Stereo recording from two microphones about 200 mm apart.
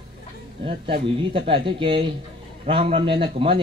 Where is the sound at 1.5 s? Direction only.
25° right (ahead or behind).